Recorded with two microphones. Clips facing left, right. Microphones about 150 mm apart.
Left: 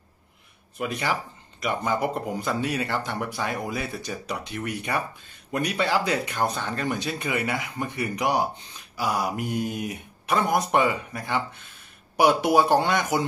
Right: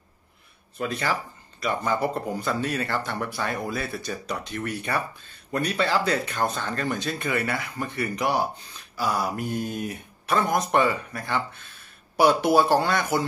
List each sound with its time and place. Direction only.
0.7 s speech: 15° left (ahead or behind)